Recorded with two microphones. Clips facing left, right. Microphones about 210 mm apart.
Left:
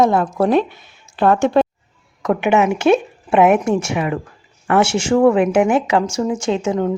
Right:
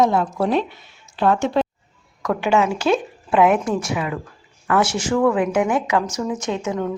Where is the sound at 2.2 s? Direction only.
20° left (ahead or behind).